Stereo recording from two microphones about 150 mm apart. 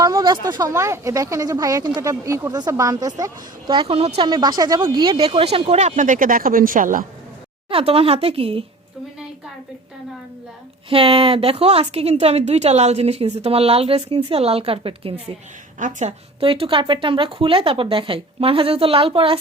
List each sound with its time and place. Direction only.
0.0 s speech: 25° right (ahead or behind); by 4.3 s 40° right (ahead or behind)
4.3 s speech: 30° right (ahead or behind); by 7.0 s 65° right (ahead or behind)
7.7 s a woman's voice: 40° right (ahead or behind)
10.8 s a woman's voice: 40° right (ahead or behind)
15.8 s a woman's voice: 55° right (ahead or behind)
16.4 s a woman's voice: 35° right (ahead or behind)